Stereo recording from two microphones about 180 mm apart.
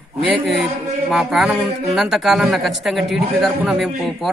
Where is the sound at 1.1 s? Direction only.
5° right (ahead or behind).